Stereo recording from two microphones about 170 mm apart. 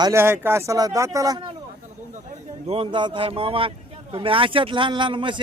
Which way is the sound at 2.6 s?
35° right (ahead or behind).